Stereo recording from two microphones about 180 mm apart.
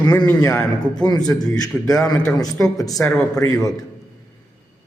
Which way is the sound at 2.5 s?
20° left (ahead or behind).